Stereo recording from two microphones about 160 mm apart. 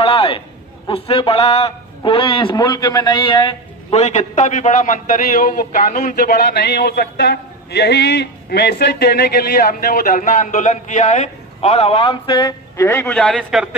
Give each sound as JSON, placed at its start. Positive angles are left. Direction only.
{"t": 0.0, "sound": "a sound", "side_deg": 35}
{"t": 0.8, "sound": "a man's voice", "side_deg": 35}
{"t": 3.9, "sound": "a man's voice", "side_deg": 45}